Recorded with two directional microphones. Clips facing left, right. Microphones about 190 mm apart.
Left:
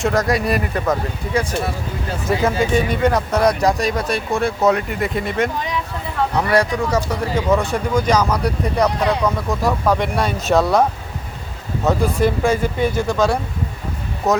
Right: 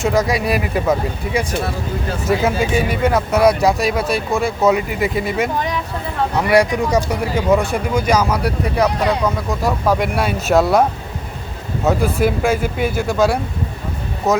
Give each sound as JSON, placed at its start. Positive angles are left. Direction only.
{"t": 0.0, "sound": "speech", "side_deg": 0}
{"t": 11.9, "sound": "speech", "side_deg": -5}